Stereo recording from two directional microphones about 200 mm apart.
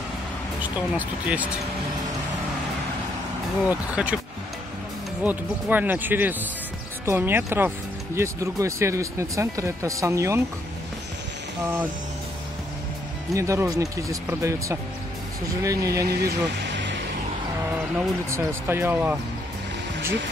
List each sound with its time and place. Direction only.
0.6 s speech: 10° right (ahead or behind)
3.6 s speech: 5° right (ahead or behind)
5.2 s speech: 10° right (ahead or behind)
13.3 s speech: 15° right (ahead or behind)
16.1 s music: 55° right (ahead or behind)
17.9 s speech: 10° right (ahead or behind)